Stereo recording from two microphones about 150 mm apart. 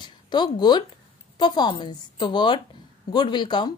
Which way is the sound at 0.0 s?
30° left (ahead or behind).